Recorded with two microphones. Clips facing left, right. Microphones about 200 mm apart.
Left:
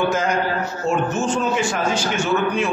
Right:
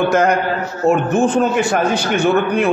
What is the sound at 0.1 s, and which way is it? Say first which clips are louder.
A man's voice: right 6 dB; 65° right (ahead or behind).